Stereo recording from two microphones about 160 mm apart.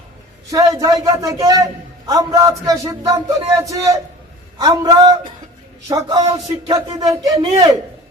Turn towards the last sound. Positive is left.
turn(degrees=-25)  # may be behind; listen again after turning